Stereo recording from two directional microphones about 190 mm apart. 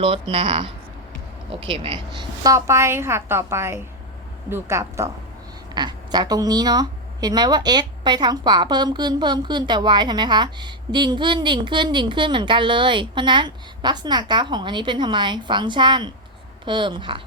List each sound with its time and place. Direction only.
0.0 s a woman's voice: 30° right (ahead or behind)